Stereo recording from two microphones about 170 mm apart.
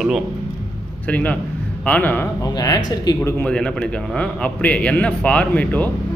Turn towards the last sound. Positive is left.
turn(degrees=10)  # may be behind; listen again after turning